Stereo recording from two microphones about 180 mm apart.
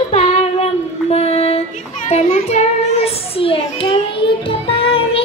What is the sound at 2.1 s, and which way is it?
A child's voice, 35° left (ahead or behind).